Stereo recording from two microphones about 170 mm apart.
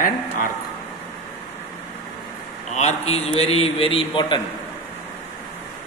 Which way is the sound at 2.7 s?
40° left (ahead or behind).